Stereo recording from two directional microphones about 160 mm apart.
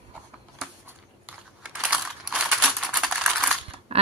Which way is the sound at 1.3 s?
5° right (ahead or behind).